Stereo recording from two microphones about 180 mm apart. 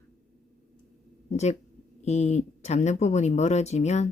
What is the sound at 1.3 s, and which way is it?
Speech, 40° left (ahead or behind).